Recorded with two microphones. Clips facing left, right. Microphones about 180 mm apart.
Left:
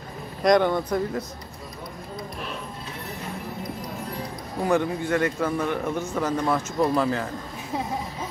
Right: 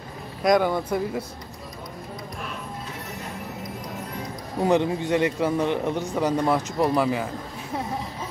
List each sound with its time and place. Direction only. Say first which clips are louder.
0.4 s speech: left 1 dB; 5° right (ahead or behind)
4.6 s a man's voice: right 2 dB; 20° right (ahead or behind)